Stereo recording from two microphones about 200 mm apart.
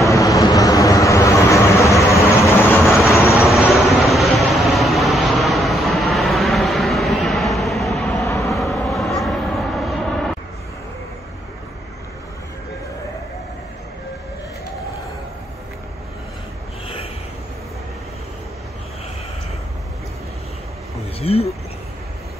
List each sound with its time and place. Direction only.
0.1 s vehicle: 15° left (ahead or behind)
2.4 s train: 10° left (ahead or behind)
3.0 s vehicle: 15° left (ahead or behind)
3.3 s vehicle: 5° right (ahead or behind)
16.8 s a sound: 30° left (ahead or behind)
21.2 s a sound: 30° left (ahead or behind)